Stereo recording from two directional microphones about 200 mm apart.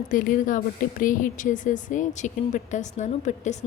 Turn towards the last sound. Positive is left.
turn(degrees=35)  # may be behind; listen again after turning